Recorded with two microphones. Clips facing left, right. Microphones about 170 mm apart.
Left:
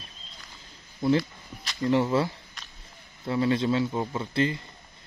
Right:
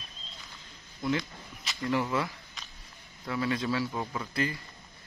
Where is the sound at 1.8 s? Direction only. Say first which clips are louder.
Left 6 dB; 25° left (ahead or behind).